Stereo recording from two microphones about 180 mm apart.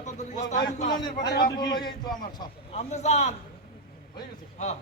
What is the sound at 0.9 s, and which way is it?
A man's voice, 25° left (ahead or behind).